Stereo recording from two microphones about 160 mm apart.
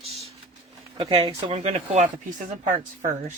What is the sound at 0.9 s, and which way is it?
Speech, 35° right (ahead or behind).